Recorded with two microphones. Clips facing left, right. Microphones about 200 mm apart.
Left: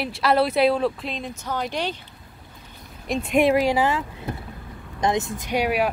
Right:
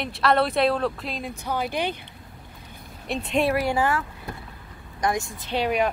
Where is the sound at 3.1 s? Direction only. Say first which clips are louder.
Left 4 dB; 5° left (ahead or behind).